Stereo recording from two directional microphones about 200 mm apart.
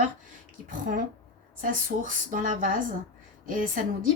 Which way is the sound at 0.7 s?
40° right (ahead or behind).